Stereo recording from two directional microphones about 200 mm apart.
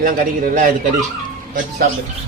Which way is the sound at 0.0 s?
45° right (ahead or behind).